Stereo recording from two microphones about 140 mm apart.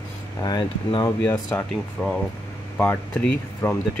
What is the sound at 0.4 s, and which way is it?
Speech, 30° left (ahead or behind).